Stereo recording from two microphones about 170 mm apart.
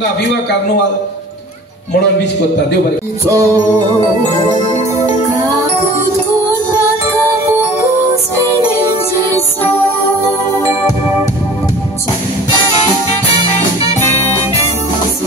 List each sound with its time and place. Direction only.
3.3 s music: 20° right (ahead or behind)
4.7 s music: 45° left (ahead or behind)